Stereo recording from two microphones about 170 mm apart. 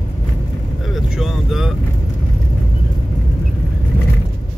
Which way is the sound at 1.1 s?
Centre (ahead or behind).